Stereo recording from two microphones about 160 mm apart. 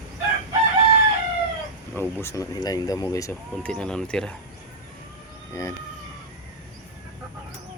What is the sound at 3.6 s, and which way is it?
Speech, 5° left (ahead or behind).